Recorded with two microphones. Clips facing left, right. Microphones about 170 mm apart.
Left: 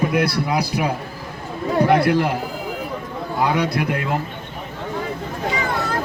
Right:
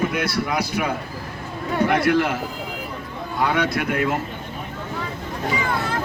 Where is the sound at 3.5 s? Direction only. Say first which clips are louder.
Left 1 dB; 35° left (ahead or behind).